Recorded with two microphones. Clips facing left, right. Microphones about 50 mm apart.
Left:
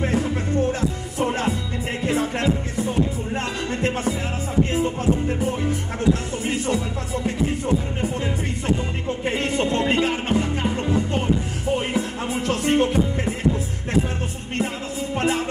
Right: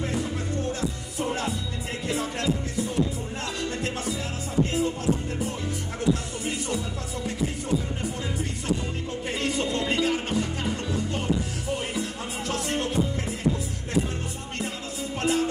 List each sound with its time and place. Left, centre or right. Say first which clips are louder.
0.0 s music: left 6 dB; left
5.4 s music: left 7 dB; left
9.3 s music: left 4 dB; left
12.4 s music: left 8 dB; left
15.1 s music: left 2 dB; left